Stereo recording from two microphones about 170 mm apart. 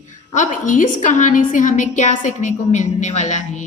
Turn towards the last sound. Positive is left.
turn(degrees=45)  # may be behind; listen again after turning